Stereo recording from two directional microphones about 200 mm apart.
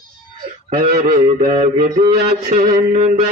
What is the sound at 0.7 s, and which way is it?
Mantra, 45° right (ahead or behind).